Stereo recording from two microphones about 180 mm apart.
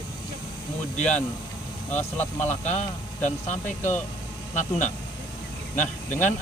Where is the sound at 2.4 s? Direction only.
40° left (ahead or behind).